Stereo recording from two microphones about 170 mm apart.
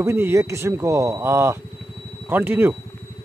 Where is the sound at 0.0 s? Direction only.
15° right (ahead or behind).